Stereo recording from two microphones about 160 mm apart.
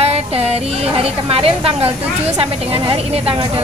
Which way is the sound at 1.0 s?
35° right (ahead or behind).